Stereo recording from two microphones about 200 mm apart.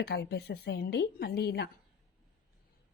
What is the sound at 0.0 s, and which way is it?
A woman's voice, 55° left (ahead or behind).